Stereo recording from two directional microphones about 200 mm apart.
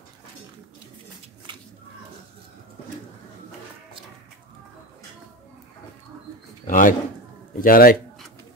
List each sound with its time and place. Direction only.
6.7 s a man's voice: 40° left (ahead or behind)